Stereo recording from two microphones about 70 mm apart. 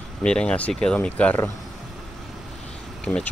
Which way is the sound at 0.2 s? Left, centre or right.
Centre.